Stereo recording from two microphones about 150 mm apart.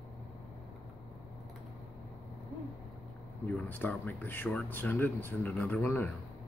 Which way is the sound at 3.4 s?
10° left (ahead or behind).